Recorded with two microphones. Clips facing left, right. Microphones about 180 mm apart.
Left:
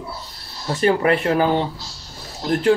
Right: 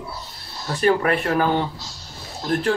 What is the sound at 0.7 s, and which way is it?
Speech, 25° left (ahead or behind).